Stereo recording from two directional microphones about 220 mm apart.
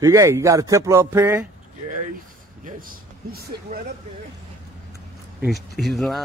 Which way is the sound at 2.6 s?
40° right (ahead or behind).